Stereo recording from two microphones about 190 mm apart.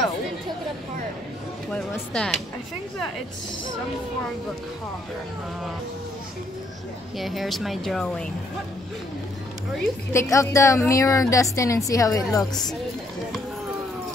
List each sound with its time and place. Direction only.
1.7 s speech: 5° left (ahead or behind)
7.2 s speech: centre (ahead or behind)
10.1 s a woman's voice: 15° left (ahead or behind)